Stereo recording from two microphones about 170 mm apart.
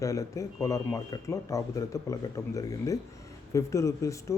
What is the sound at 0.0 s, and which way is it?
A man's voice, 20° left (ahead or behind).